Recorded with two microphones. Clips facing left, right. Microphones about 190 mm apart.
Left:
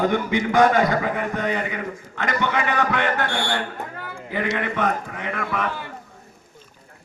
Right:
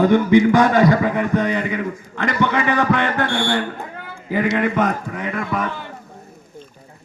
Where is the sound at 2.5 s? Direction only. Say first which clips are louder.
Right 4 dB; 45° right (ahead or behind).